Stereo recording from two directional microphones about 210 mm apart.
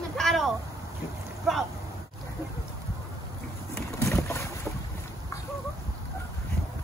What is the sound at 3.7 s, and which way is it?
Boat, 15° left (ahead or behind).